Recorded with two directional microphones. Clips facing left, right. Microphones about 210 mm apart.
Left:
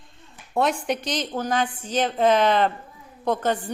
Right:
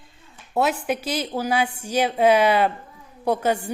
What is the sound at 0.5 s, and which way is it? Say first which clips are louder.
Speech: right 1 dB; 5° right (ahead or behind).